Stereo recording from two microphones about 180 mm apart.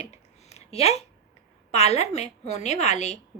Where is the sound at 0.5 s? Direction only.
35° left (ahead or behind).